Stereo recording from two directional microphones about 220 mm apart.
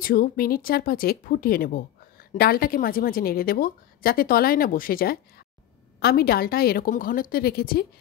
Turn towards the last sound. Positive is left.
turn(degrees=45)  # may be behind; listen again after turning